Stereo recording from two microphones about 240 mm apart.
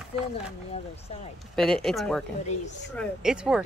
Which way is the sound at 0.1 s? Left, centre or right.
Left.